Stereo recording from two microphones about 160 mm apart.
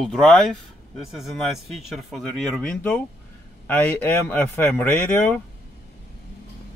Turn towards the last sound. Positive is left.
turn(degrees=10)  # may be behind; listen again after turning